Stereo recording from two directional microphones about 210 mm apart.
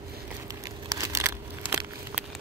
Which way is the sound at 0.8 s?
15° right (ahead or behind).